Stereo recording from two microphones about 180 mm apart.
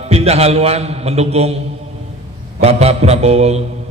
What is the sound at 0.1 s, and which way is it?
A man's voice, 35° right (ahead or behind).